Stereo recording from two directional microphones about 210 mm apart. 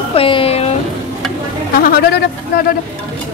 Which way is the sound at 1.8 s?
45° left (ahead or behind).